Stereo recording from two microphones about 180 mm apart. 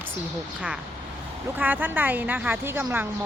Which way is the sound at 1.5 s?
10° right (ahead or behind).